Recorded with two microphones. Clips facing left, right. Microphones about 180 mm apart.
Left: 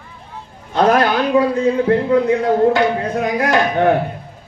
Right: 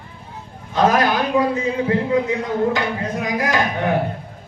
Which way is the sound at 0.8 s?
60° left (ahead or behind).